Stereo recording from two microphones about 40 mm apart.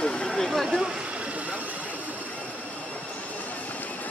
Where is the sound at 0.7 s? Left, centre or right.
Right.